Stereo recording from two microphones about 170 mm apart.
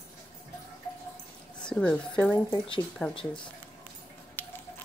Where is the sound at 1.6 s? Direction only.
5° left (ahead or behind).